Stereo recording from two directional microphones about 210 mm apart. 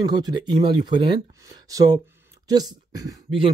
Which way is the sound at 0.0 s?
20° right (ahead or behind).